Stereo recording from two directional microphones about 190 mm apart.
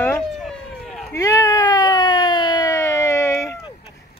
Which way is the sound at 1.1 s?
15° left (ahead or behind).